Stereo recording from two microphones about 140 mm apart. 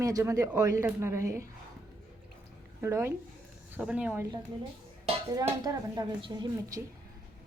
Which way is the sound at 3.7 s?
10° right (ahead or behind).